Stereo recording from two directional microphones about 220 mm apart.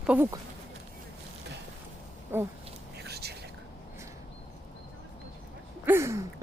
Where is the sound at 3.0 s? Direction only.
45° right (ahead or behind).